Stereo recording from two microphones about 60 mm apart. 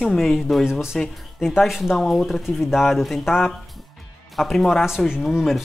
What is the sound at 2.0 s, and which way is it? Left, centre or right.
Speech, centre.